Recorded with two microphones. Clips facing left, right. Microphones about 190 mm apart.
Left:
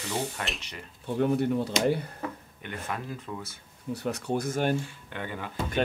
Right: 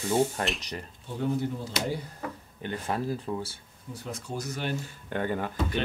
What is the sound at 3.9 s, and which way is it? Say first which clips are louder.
Speech: left 6 dB; 65° left (ahead or behind).